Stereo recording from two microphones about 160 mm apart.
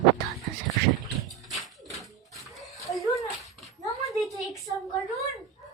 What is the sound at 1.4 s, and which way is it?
Music, centre (ahead or behind).